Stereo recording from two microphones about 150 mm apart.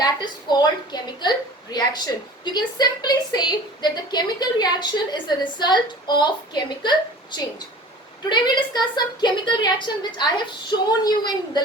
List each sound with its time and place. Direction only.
0.0 s a woman's voice: 30° left (ahead or behind)